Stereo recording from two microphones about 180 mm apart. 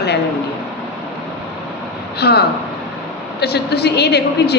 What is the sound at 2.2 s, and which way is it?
A woman's voice, 65° left (ahead or behind).